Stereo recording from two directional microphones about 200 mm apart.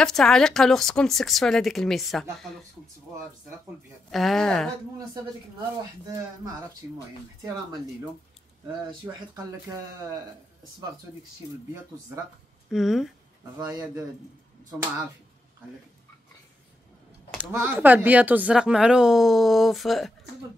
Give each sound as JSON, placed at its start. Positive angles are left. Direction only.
{"t": 0.0, "sound": "speech", "side_deg": 5}
{"t": 4.1, "sound": "speech", "side_deg": 0}
{"t": 9.0, "sound": "speech", "side_deg": -15}
{"t": 12.6, "sound": "speech", "side_deg": 0}
{"t": 13.6, "sound": "speech", "side_deg": -15}
{"t": 17.4, "sound": "speech", "side_deg": -10}